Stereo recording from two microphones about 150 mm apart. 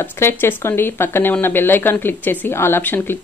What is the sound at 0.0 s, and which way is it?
Speech, 15° left (ahead or behind).